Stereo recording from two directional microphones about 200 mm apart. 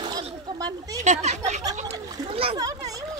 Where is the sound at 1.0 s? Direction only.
35° right (ahead or behind).